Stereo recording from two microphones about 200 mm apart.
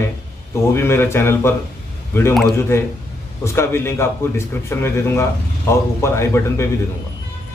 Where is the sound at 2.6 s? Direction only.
15° left (ahead or behind).